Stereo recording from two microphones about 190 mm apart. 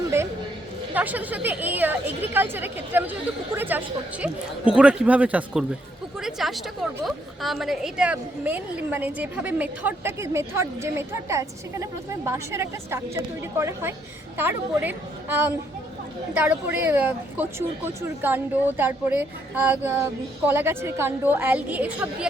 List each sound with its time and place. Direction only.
0.9 s a woman's voice: 10° right (ahead or behind)